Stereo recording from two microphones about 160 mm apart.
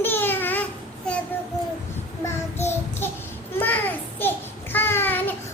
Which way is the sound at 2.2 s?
15° left (ahead or behind).